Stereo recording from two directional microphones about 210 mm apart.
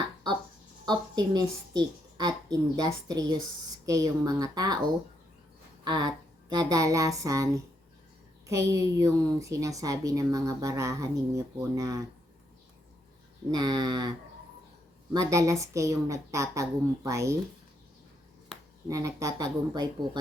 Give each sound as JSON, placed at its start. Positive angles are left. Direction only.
{"t": 0.9, "sound": "a woman's voice", "side_deg": -20}
{"t": 5.8, "sound": "a woman's voice", "side_deg": -20}
{"t": 13.5, "sound": "a woman's voice", "side_deg": -20}
{"t": 15.1, "sound": "a woman's voice", "side_deg": -15}
{"t": 18.9, "sound": "a woman's voice", "side_deg": -15}